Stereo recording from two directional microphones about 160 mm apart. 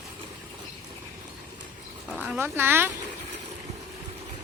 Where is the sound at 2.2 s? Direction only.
10° right (ahead or behind).